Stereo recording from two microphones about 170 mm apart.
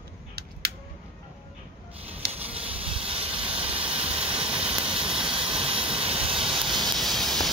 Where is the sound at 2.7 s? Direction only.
35° right (ahead or behind).